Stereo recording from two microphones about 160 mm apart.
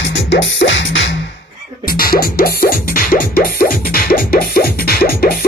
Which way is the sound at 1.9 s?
65° left (ahead or behind).